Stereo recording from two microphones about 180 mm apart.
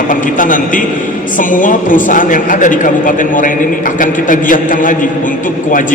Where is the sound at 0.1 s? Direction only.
45° left (ahead or behind).